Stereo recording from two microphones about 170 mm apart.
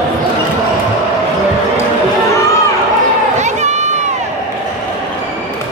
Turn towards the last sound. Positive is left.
turn(degrees=-45)  # may be behind; listen again after turning